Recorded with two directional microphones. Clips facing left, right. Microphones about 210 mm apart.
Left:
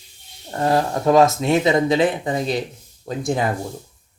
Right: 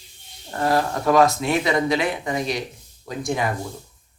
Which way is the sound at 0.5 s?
25° left (ahead or behind).